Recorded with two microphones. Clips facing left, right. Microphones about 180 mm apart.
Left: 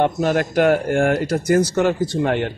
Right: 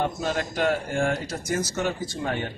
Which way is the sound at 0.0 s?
65° left (ahead or behind).